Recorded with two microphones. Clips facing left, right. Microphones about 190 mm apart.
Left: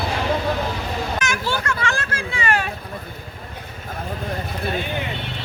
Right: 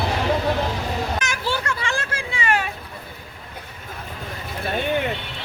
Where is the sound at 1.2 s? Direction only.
35° right (ahead or behind).